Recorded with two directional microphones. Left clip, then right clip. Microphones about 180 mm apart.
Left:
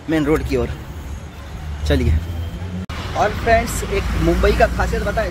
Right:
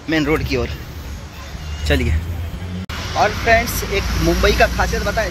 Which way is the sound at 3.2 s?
5° left (ahead or behind).